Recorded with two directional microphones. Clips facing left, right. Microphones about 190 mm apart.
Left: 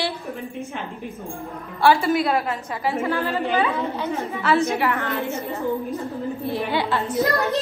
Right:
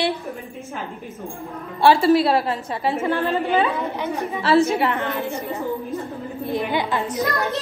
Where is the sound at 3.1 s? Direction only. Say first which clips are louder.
Right 2 dB; 20° right (ahead or behind).